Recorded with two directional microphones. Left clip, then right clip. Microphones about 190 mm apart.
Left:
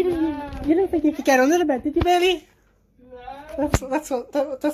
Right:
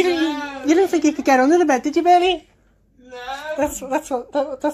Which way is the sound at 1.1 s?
Centre (ahead or behind).